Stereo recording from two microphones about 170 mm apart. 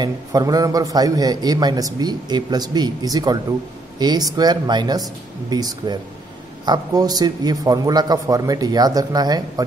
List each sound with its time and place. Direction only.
0.0 s a man's voice: 20° right (ahead or behind)